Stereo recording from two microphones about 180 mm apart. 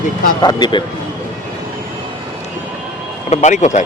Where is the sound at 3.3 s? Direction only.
40° left (ahead or behind).